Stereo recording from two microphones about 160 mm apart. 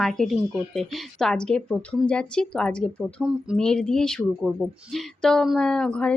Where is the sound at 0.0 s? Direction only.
Centre (ahead or behind).